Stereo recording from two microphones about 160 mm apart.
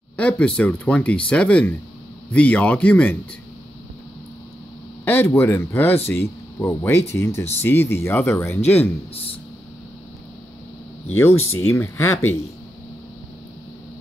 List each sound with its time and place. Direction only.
0.2 s speech: 5° left (ahead or behind)
5.0 s speech: 15° left (ahead or behind)
9.1 s speech: 35° left (ahead or behind)
11.1 s speech: 15° left (ahead or behind)